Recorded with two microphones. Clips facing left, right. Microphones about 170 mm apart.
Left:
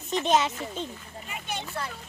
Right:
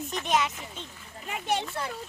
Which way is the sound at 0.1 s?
25° left (ahead or behind).